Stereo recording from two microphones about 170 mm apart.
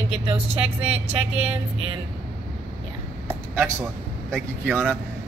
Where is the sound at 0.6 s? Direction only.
10° right (ahead or behind).